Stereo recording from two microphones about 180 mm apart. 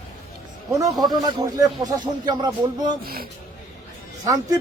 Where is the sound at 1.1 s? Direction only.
25° right (ahead or behind).